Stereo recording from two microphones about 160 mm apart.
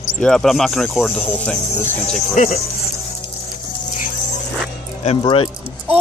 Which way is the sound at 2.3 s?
50° left (ahead or behind).